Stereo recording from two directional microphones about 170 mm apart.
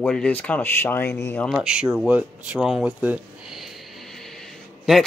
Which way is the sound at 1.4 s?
5° right (ahead or behind).